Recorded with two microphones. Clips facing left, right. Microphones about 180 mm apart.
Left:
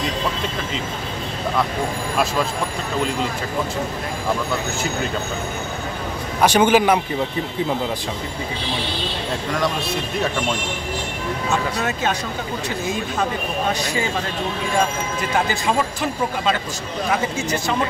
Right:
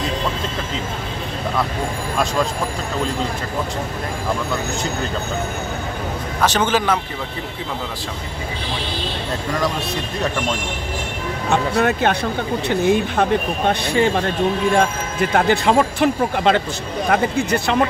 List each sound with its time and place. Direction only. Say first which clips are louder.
6.4 s a man's voice: left 4 dB; 10° left (ahead or behind)
11.4 s speech: right 6 dB; 60° right (ahead or behind)